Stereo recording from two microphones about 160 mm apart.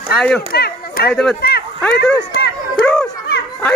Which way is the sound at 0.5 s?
80° left.